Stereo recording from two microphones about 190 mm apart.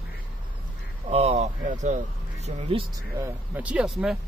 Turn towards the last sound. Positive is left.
turn(degrees=-5)  # may be behind; listen again after turning